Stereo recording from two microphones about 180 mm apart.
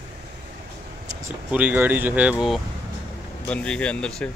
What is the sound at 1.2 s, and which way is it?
Speech, 10° right (ahead or behind).